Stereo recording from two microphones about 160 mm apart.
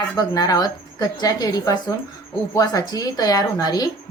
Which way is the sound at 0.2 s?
25° left (ahead or behind).